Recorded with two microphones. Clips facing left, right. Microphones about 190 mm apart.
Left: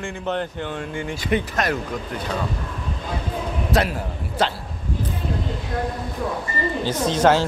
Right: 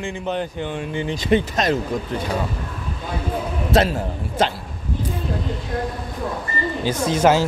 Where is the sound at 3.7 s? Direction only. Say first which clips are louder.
Right 4 dB; 25° right (ahead or behind).